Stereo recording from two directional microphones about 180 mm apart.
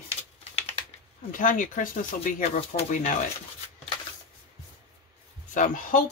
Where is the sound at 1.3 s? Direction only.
45° left (ahead or behind).